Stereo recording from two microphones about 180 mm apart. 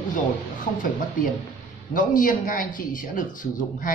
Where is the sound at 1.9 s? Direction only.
50° left (ahead or behind).